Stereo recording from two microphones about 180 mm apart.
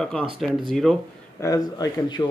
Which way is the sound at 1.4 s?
20° left (ahead or behind).